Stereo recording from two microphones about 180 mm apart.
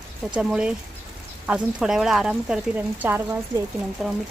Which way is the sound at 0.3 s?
5° right (ahead or behind).